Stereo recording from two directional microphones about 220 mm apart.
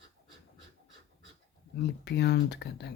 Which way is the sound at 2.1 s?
50° left (ahead or behind).